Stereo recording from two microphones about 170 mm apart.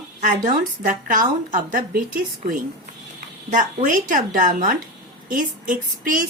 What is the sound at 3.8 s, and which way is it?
Speech, 50° right (ahead or behind).